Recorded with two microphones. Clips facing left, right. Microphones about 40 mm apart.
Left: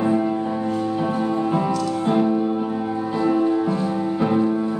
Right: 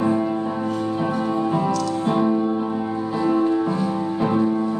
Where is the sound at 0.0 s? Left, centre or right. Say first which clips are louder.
Left 1 dB; centre.